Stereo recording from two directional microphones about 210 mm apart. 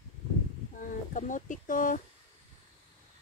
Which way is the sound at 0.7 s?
35° left (ahead or behind).